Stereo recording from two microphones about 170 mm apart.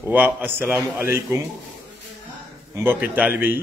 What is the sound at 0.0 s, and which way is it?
A man's voice, 10° right (ahead or behind).